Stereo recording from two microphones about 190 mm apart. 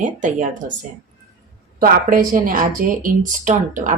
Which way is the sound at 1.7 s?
50° right (ahead or behind).